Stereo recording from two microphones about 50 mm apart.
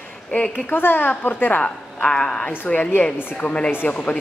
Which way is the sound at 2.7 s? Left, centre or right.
Left.